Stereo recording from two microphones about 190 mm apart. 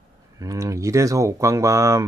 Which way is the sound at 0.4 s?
15° right (ahead or behind).